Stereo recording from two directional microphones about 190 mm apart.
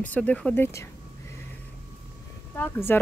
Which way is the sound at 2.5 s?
10° left (ahead or behind).